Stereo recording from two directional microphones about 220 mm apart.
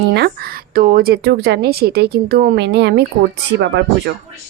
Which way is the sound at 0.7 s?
40° right (ahead or behind).